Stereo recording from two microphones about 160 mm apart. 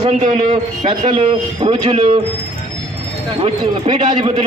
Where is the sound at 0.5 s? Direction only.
35° right (ahead or behind).